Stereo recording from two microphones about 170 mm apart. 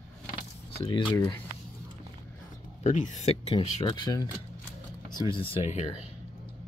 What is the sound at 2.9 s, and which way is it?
Speech, 45° left (ahead or behind).